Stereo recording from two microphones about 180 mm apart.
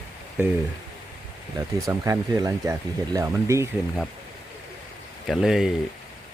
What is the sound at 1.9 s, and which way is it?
Speech, 15° right (ahead or behind).